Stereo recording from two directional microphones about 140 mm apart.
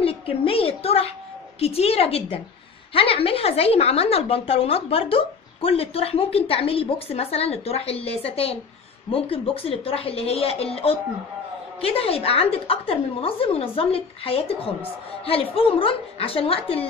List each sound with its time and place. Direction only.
0.0 s a woman's voice: 40° left (ahead or behind)